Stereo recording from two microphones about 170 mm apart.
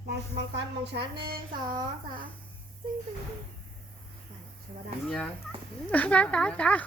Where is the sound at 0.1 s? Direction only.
75° right (ahead or behind).